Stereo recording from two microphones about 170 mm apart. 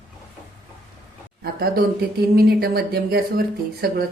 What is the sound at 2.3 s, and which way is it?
Speech, 65° right (ahead or behind).